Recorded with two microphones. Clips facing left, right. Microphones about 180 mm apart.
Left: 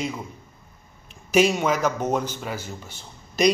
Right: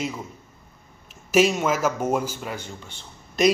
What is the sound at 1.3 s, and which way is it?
A man's voice, centre (ahead or behind).